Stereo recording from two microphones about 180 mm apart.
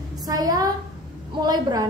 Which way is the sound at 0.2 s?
20° right (ahead or behind).